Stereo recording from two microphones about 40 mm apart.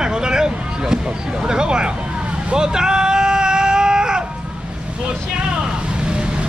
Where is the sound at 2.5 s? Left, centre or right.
Centre.